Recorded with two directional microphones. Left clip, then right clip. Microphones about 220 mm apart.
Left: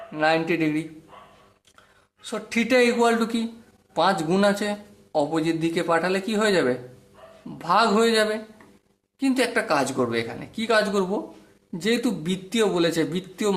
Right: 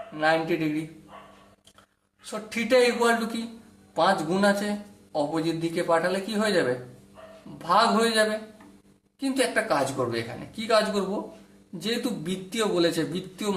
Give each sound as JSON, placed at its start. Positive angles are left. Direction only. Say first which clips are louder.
{"t": 0.2, "sound": "a man's voice", "louder": "left 2 dB", "side_deg": 35}
{"t": 2.3, "sound": "a man's voice", "louder": "left 1 dB", "side_deg": 35}
{"t": 7.6, "sound": "a man's voice", "louder": "left 2 dB", "side_deg": 35}